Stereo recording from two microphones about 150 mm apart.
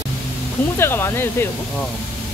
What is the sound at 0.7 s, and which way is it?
Speech, 15° left (ahead or behind).